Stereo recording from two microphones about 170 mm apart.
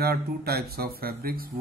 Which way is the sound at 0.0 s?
65° right (ahead or behind).